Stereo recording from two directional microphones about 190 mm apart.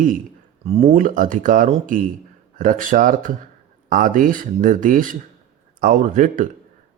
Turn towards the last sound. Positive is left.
turn(degrees=-40)  # may be behind; listen again after turning